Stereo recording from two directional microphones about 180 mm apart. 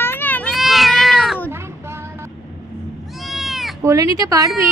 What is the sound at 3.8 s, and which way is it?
Speech, 15° right (ahead or behind).